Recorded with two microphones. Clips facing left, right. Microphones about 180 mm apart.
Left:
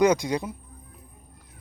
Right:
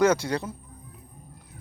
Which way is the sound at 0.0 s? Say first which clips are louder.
Left 1 dB; 15° left (ahead or behind).